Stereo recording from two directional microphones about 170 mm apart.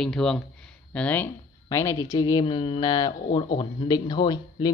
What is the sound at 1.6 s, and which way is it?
Speech, 20° left (ahead or behind).